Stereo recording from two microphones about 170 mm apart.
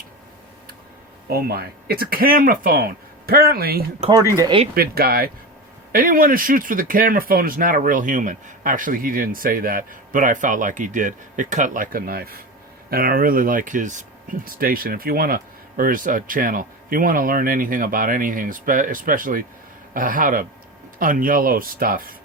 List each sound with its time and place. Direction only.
1.3 s speech: 65° right (ahead or behind)
4.4 s speech: 25° right (ahead or behind)
4.7 s speech: 60° right (ahead or behind)